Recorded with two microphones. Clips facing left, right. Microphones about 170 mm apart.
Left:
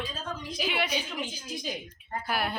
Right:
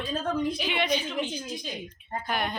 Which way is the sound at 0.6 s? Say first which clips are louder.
Right 3 dB; 5° left (ahead or behind).